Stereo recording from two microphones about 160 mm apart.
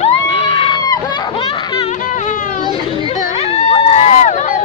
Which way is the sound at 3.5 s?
40° left (ahead or behind).